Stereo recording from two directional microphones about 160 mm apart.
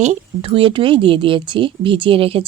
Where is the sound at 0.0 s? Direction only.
40° right (ahead or behind).